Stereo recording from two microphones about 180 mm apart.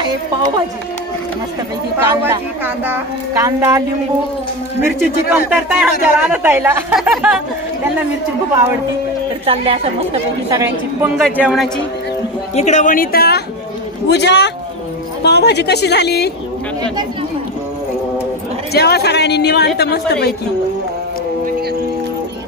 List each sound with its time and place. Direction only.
0.0 s speech: 25° right (ahead or behind)
2.2 s speech: 10° right (ahead or behind)
4.8 s speech: 10° right (ahead or behind)
7.0 s speech: centre (ahead or behind)
9.5 s a woman's voice: 35° right (ahead or behind)
10.5 s speech: 15° right (ahead or behind)
11.1 s speech: centre (ahead or behind)
12.5 s speech: 40° left (ahead or behind); by 13.4 s 60° left (ahead or behind)
14.0 s a woman's voice: 70° left (ahead or behind)
18.7 s a woman's voice: 60° left (ahead or behind)